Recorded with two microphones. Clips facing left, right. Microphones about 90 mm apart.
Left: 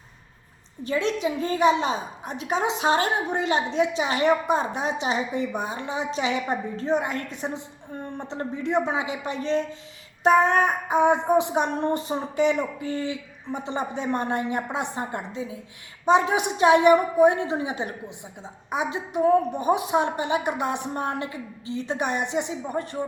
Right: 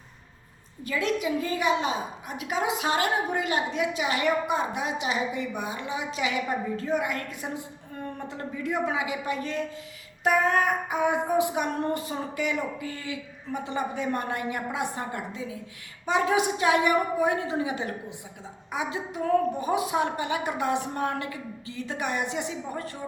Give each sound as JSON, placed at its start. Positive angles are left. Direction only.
{"t": 0.9, "sound": "a woman's voice", "side_deg": 30}